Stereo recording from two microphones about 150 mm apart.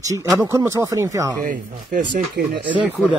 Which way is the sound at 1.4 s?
65° right (ahead or behind).